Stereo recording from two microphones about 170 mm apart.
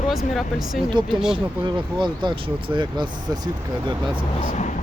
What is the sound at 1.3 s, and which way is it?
Speech, 30° right (ahead or behind).